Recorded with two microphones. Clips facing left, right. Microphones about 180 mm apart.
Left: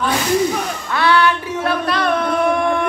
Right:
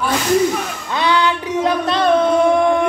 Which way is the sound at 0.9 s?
15° right (ahead or behind).